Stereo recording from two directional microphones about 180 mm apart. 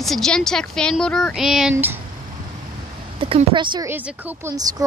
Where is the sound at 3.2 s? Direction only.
30° right (ahead or behind).